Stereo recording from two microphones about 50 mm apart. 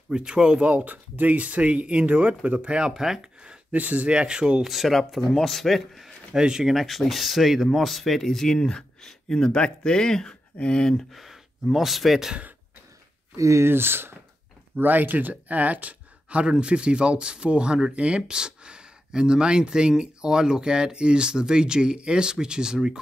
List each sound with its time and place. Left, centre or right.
0.1 s speech: centre
0.7 s speech: right
2.9 s speech: centre
3.7 s speech: right
4.6 s speech: centre
6.3 s speech: centre
6.7 s speech: centre
11.1 s speech: centre
13.4 s speech: right
13.7 s speech: right
14.8 s speech: right; by 22.9 s centre